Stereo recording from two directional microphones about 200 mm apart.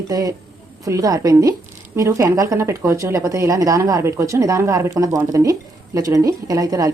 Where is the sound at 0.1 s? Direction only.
20° right (ahead or behind).